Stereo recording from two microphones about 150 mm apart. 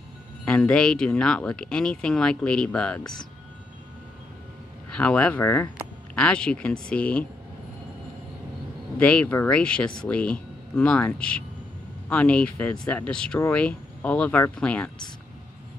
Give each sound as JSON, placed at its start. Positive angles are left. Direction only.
{"t": 0.5, "sound": "speech", "side_deg": 5}
{"t": 4.8, "sound": "speech", "side_deg": 5}
{"t": 8.9, "sound": "speech", "side_deg": 10}